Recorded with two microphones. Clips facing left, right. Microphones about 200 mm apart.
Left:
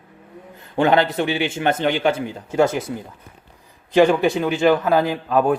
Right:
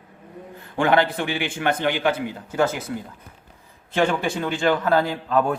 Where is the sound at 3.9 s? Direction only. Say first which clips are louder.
Left 7 dB; 15° left (ahead or behind).